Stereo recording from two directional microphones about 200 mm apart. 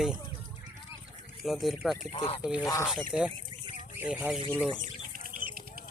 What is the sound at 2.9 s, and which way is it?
Speech, 5° right (ahead or behind).